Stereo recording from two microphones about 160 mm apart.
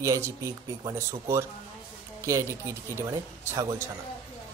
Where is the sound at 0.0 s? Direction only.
20° right (ahead or behind).